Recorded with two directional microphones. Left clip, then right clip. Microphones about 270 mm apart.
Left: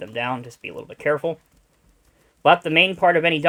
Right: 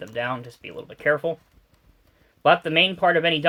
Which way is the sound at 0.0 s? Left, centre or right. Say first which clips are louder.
Left 2 dB; left.